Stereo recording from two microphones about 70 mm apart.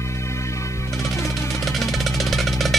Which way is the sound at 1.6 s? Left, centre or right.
Centre.